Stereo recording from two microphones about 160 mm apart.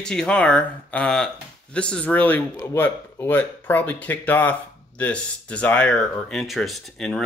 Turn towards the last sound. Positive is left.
turn(degrees=0)  # may be behind; listen again after turning